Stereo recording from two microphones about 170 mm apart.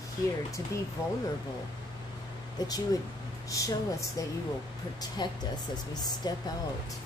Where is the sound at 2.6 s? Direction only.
25° left (ahead or behind).